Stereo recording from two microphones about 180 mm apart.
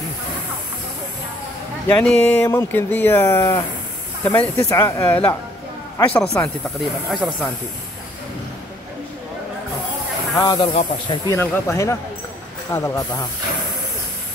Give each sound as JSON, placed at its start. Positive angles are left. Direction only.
{"t": 2.0, "sound": "speech", "side_deg": 5}
{"t": 6.8, "sound": "speech", "side_deg": 0}
{"t": 10.3, "sound": "speech", "side_deg": 20}
{"t": 11.2, "sound": "speech", "side_deg": 15}